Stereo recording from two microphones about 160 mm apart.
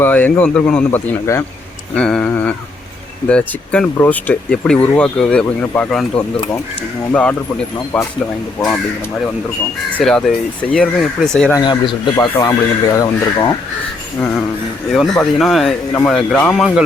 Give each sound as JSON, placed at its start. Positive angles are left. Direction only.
{"t": 0.0, "sound": "speech", "side_deg": 10}
{"t": 9.9, "sound": "speech", "side_deg": 5}
{"t": 11.5, "sound": "speech", "side_deg": 30}
{"t": 14.9, "sound": "speech", "side_deg": 0}